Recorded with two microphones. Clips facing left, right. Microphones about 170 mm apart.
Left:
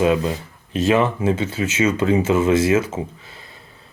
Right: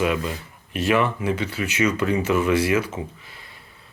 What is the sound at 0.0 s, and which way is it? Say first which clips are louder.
Speech: left 5 dB; 30° left (ahead or behind).